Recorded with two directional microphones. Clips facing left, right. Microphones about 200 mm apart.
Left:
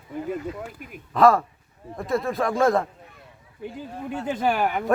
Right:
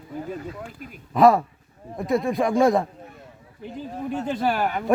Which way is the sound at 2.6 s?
15° right (ahead or behind).